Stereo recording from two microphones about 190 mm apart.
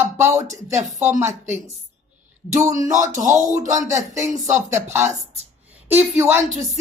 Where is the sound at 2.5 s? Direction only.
15° right (ahead or behind).